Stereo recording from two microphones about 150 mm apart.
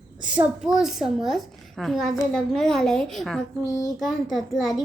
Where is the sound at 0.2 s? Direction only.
5° right (ahead or behind).